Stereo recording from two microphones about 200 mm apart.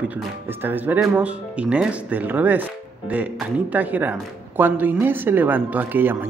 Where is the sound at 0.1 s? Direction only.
10° right (ahead or behind).